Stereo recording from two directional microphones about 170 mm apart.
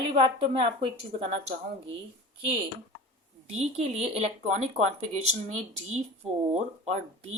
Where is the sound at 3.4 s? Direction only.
40° right (ahead or behind).